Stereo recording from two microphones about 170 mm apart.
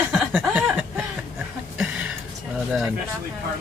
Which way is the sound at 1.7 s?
5° right (ahead or behind).